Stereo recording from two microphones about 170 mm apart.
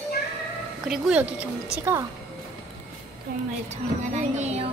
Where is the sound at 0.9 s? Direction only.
5° right (ahead or behind).